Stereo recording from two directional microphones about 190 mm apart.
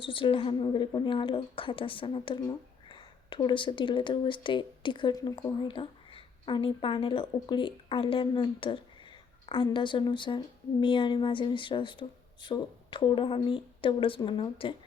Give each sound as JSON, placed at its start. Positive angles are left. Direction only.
{"t": 0.0, "sound": "a woman's voice", "side_deg": 30}